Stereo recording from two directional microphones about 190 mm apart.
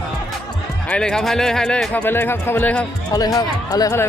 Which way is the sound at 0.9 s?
5° left (ahead or behind).